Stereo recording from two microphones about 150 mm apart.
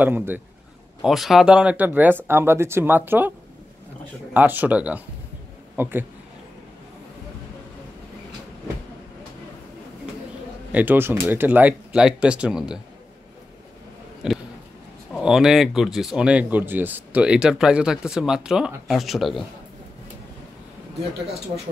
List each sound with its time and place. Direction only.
0.0 s speech: 15° right (ahead or behind)
1.0 s a man's voice: centre (ahead or behind)
10.7 s speech: 10° right (ahead or behind)
14.2 s speech: 5° right (ahead or behind)